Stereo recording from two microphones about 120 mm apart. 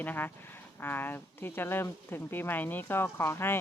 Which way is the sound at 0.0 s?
15° left (ahead or behind).